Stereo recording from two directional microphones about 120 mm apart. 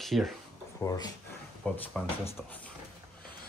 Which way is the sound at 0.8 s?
35° left (ahead or behind).